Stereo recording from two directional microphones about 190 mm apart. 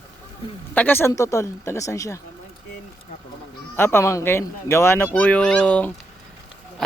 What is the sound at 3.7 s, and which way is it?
Speech, 10° left (ahead or behind).